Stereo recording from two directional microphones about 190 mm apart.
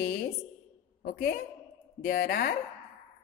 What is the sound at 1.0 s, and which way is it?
Music, 55° left (ahead or behind).